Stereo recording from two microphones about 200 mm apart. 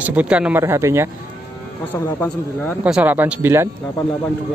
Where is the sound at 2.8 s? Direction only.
5° right (ahead or behind).